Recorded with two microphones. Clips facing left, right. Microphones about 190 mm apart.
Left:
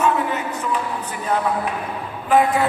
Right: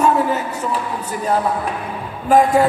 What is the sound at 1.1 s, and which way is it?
Speech, 35° right (ahead or behind).